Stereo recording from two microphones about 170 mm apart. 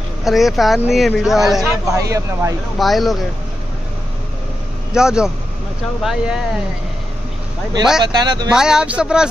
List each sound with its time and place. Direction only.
0.2 s speech: centre (ahead or behind)
1.9 s speech: 20° right (ahead or behind)
2.8 s speech: centre (ahead or behind)
4.9 s speech: 5° right (ahead or behind)
8.0 s speech: 25° right (ahead or behind)
8.5 s speech: 5° right (ahead or behind)